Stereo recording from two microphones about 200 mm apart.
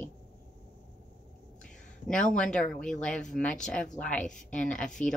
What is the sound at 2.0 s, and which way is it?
Speech, 5° left (ahead or behind).